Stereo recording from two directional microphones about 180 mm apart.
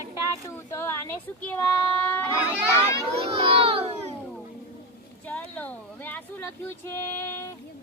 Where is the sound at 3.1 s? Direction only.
30° right (ahead or behind).